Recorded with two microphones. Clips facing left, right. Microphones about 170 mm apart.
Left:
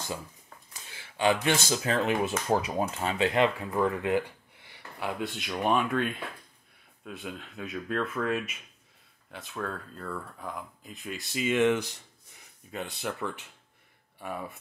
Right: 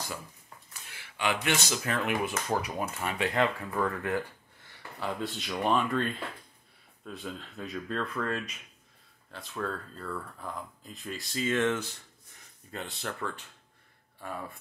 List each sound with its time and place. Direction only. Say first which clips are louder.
0.8 s speech: left 6 dB; 30° left (ahead or behind); by 11.2 s centre (ahead or behind)
11.3 s speech: left 3 dB; 15° left (ahead or behind)